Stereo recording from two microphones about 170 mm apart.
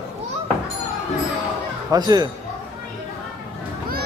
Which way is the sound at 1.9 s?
25° right (ahead or behind).